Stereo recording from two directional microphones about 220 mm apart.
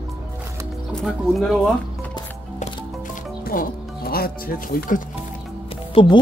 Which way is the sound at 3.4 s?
40° left (ahead or behind).